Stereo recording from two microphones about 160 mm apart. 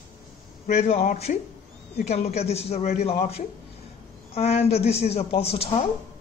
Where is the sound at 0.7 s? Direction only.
50° left (ahead or behind).